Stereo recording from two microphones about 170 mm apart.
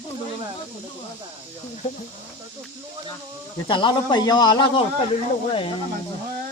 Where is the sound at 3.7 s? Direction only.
30° left (ahead or behind).